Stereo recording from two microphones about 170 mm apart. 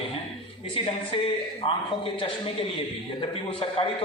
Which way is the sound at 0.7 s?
30° left (ahead or behind).